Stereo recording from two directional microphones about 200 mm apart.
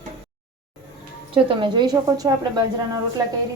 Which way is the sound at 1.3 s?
25° right (ahead or behind).